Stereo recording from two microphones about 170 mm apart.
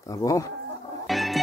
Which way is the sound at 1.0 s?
Centre (ahead or behind).